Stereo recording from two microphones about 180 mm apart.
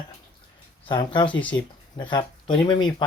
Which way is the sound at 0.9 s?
25° left (ahead or behind).